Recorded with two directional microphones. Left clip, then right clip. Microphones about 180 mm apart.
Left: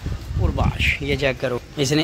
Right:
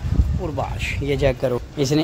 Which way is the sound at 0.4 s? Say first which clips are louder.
Left 3 dB; 10° right (ahead or behind).